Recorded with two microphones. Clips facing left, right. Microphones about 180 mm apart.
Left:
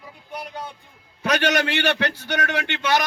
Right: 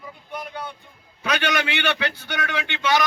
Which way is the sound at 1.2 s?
45° left (ahead or behind).